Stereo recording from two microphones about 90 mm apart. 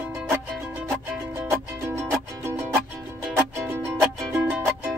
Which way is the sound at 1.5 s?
30° right (ahead or behind).